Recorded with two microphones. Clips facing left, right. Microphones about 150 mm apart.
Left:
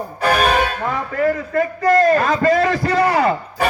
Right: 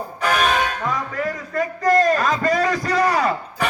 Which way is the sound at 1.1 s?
60° left (ahead or behind).